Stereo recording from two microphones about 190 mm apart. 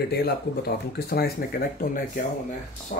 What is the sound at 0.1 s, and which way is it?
Speech, 55° left (ahead or behind).